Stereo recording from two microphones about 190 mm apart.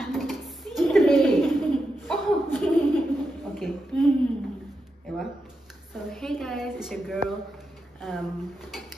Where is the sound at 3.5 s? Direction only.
Centre (ahead or behind).